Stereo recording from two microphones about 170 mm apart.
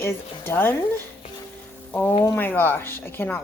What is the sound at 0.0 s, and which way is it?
Speech, 15° left (ahead or behind).